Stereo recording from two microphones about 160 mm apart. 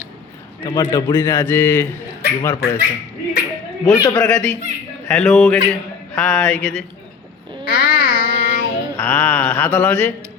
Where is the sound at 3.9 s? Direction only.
25° left (ahead or behind).